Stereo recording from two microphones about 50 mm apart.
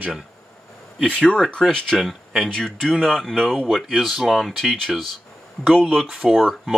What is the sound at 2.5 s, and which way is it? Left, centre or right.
Speech, centre.